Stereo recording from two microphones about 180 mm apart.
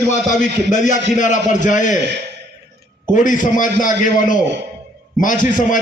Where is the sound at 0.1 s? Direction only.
45° left (ahead or behind).